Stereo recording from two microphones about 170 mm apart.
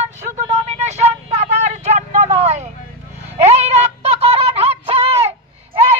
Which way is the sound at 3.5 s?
40° right (ahead or behind).